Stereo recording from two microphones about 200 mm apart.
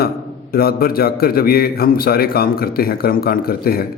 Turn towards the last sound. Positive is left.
turn(degrees=50)  # may be behind; listen again after turning